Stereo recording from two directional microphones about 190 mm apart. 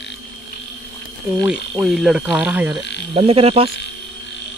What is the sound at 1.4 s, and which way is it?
Ratchet, 5° right (ahead or behind).